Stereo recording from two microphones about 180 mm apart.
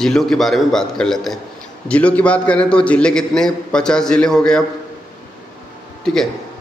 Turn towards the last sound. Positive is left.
turn(degrees=5)  # may be behind; listen again after turning